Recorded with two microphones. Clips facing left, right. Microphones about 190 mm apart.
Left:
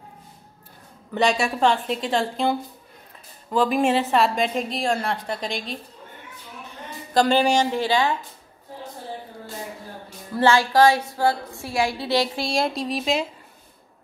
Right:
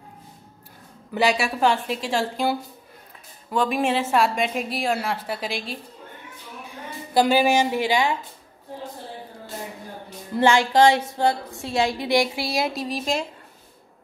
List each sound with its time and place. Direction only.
1.1 s a woman's voice: 5° right (ahead or behind)
3.5 s a woman's voice: centre (ahead or behind)
10.3 s a woman's voice: 20° right (ahead or behind); by 13.3 s centre (ahead or behind)